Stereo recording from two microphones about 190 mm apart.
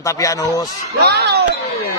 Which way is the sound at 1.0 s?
60° right (ahead or behind).